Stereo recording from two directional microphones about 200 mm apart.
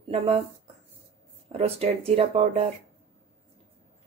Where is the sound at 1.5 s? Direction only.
30° right (ahead or behind).